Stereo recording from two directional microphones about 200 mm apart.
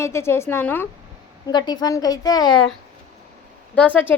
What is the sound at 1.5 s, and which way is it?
A woman's voice, 20° left (ahead or behind).